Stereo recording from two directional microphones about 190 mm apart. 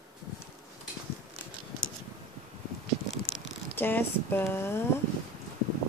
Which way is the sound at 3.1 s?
75° left (ahead or behind).